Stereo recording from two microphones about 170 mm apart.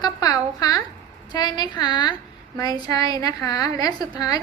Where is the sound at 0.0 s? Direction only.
20° left (ahead or behind).